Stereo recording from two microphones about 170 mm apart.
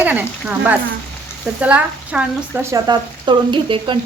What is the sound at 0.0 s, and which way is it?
A woman's voice, 10° right (ahead or behind).